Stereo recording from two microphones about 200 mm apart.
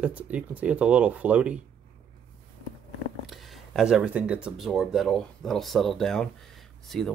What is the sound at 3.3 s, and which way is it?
Speech, centre (ahead or behind).